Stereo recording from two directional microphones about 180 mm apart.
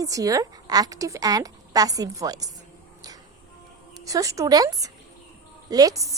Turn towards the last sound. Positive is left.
turn(degrees=-20)  # may be behind; listen again after turning